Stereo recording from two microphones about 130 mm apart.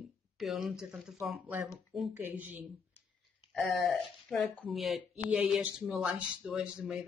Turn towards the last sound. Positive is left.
turn(degrees=-5)  # may be behind; listen again after turning